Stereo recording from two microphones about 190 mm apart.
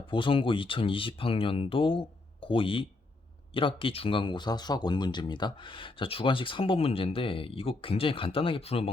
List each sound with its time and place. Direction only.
0.1 s speech: 25° left (ahead or behind)